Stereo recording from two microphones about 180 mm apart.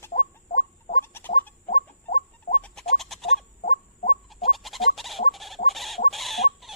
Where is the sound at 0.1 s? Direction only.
45° left (ahead or behind).